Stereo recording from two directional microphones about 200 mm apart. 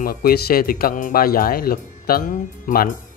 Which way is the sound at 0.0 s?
50° left (ahead or behind).